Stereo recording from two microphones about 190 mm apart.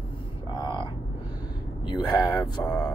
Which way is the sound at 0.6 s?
25° left (ahead or behind).